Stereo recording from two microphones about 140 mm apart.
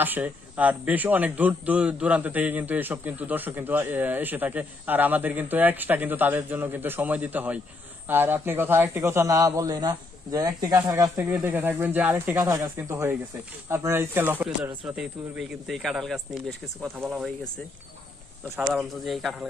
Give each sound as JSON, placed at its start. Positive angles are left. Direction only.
{"t": 0.0, "sound": "a man's voice", "side_deg": -10}
{"t": 12.4, "sound": "a man's voice", "side_deg": -25}
{"t": 18.6, "sound": "speech", "side_deg": 0}